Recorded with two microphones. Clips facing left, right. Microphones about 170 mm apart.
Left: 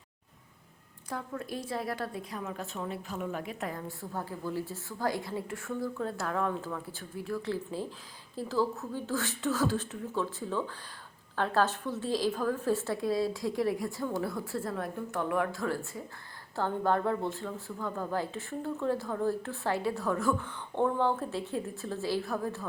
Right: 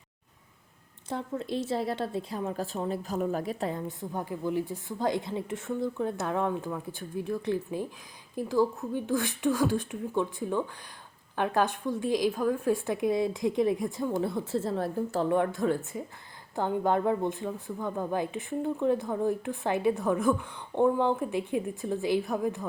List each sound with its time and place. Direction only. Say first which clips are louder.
1.1 s a woman's voice: right 5 dB; 25° right (ahead or behind)
3.7 s a woman's voice: right 4 dB; 20° right (ahead or behind)